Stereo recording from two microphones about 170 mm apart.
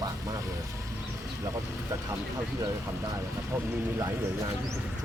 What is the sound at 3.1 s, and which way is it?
Speech, 15° right (ahead or behind).